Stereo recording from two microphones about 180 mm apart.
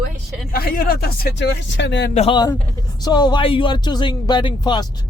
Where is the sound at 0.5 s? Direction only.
55° left (ahead or behind); by 2.1 s 75° left (ahead or behind).